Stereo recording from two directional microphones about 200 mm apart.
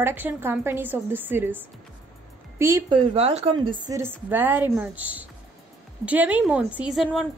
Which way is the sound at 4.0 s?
10° right (ahead or behind).